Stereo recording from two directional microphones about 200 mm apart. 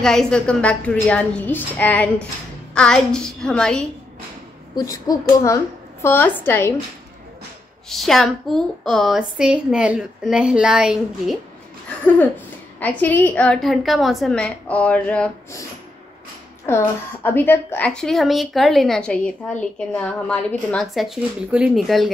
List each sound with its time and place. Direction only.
0.0 s a woman's voice: 5° left (ahead or behind)
4.7 s a woman's voice: 20° left (ahead or behind)
7.9 s a woman's voice: centre (ahead or behind)
12.7 s a woman's voice: 10° left (ahead or behind)
16.6 s a woman's voice: 10° left (ahead or behind)